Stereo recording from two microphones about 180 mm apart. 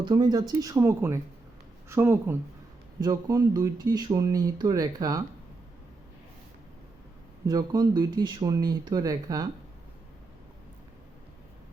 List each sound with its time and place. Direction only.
0.0 s speech: 25° right (ahead or behind)
7.4 s speech: 20° right (ahead or behind)